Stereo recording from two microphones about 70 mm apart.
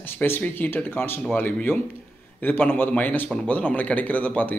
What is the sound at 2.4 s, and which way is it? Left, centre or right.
A man's voice, left.